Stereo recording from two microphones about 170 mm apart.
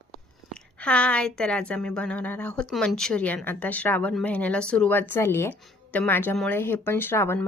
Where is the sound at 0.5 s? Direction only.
5° left (ahead or behind).